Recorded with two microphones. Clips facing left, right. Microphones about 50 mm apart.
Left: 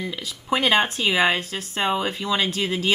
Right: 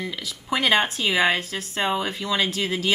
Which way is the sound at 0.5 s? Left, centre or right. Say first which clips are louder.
Left 1 dB; left.